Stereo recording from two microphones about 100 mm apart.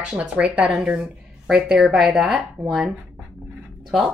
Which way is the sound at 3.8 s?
5° right (ahead or behind).